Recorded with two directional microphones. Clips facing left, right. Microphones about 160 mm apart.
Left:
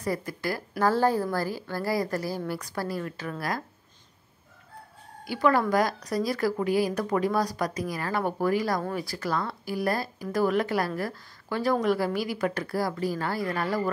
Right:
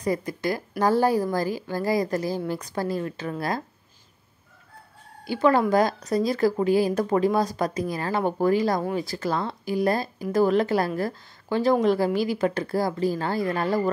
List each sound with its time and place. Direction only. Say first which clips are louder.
0.0 s a woman's voice: right 4 dB; 20° right (ahead or behind)
5.2 s a woman's voice: right 3 dB; 25° right (ahead or behind)